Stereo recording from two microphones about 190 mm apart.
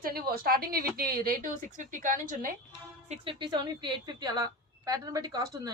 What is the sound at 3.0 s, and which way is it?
Speech, 30° right (ahead or behind).